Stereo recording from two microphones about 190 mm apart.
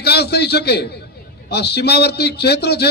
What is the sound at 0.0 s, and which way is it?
A man's voice, 60° left (ahead or behind).